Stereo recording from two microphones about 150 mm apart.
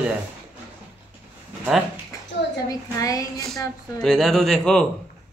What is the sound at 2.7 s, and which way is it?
Speech, 25° left (ahead or behind).